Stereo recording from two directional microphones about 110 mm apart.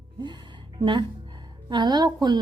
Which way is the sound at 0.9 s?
45° right (ahead or behind).